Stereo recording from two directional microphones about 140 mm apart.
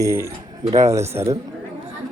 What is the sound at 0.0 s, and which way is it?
A man's voice, 20° right (ahead or behind).